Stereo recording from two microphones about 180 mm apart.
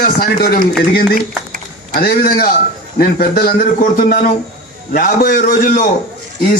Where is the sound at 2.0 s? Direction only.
60° left (ahead or behind).